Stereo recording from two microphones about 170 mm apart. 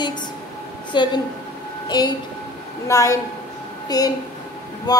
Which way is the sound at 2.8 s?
20° left (ahead or behind).